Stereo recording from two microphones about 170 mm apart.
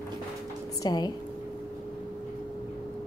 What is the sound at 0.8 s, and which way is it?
Speech, 25° left (ahead or behind).